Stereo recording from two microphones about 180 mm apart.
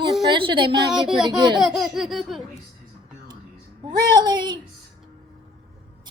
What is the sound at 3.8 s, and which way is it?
Speech, 25° right (ahead or behind).